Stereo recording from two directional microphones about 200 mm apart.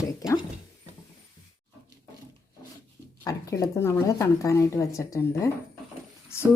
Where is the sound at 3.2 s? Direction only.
15° left (ahead or behind).